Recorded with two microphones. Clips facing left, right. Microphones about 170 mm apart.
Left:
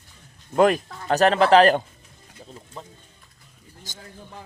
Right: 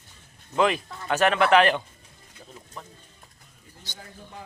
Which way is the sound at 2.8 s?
30° left (ahead or behind).